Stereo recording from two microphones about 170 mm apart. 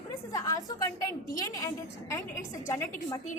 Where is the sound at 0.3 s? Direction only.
20° left (ahead or behind).